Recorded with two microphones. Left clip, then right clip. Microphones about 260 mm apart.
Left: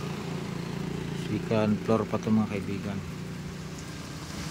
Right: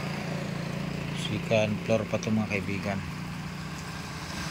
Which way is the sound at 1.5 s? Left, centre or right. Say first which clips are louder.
Right 1 dB; centre.